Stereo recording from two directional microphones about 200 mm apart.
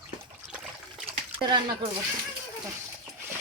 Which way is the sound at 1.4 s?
25° right (ahead or behind).